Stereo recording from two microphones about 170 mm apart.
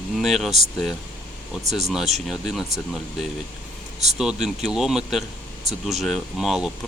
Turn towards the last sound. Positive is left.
turn(degrees=-5)  # may be behind; listen again after turning